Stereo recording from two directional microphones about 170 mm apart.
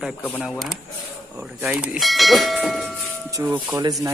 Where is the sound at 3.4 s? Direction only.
20° right (ahead or behind).